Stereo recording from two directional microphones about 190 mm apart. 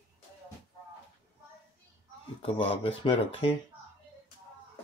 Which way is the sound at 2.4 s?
30° left (ahead or behind).